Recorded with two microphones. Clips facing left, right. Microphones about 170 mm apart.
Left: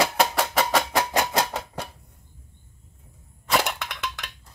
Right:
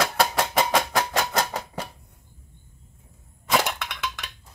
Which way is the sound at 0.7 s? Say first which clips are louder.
Left 1 dB; 10° left (ahead or behind).